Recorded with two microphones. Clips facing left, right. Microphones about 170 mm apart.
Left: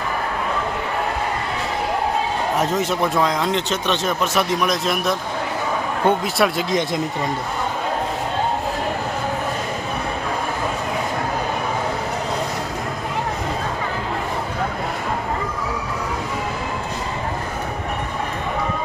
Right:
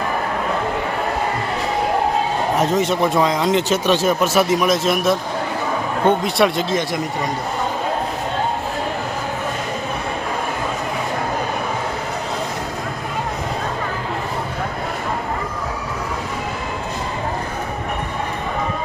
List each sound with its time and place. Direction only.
2.6 s a man's voice: centre (ahead or behind)
6.7 s speech: 20° left (ahead or behind)